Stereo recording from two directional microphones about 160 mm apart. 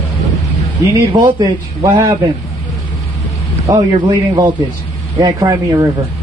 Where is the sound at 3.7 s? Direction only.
20° right (ahead or behind).